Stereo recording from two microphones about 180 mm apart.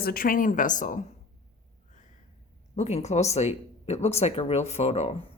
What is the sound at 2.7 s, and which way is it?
Speech, 40° left (ahead or behind).